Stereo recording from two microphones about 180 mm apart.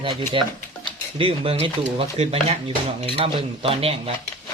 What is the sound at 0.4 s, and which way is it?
Speech, 30° right (ahead or behind).